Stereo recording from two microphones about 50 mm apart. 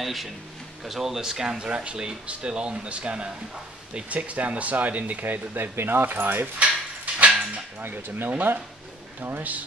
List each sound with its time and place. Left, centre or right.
0.0 s speech: centre; by 6.5 s right
7.2 s a sound: right
7.8 s speech: right